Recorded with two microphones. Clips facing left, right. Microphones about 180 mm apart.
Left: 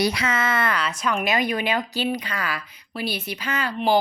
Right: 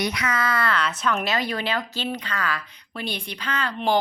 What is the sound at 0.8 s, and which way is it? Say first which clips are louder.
Speech: even; 10° left (ahead or behind).